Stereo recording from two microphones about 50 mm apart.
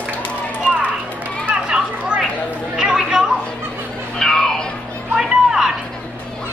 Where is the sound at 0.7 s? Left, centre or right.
Right.